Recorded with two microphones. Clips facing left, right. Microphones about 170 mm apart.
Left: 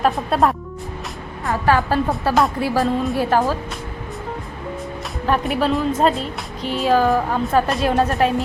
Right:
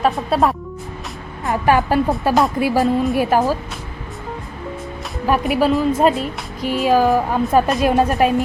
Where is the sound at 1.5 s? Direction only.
15° right (ahead or behind).